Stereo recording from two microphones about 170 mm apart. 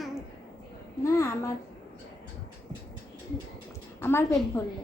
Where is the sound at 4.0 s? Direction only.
15° left (ahead or behind).